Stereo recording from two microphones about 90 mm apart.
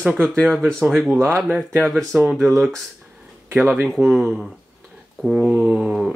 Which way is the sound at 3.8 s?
Centre (ahead or behind).